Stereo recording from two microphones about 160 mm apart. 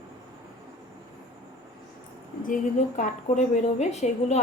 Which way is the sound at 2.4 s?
55° left (ahead or behind).